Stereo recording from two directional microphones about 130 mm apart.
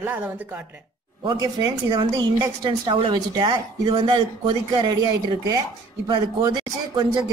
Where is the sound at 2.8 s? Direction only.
40° right (ahead or behind).